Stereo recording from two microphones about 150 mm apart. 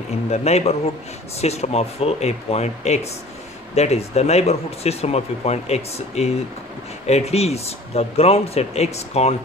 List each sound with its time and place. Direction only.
0.3 s speech: 45° left (ahead or behind)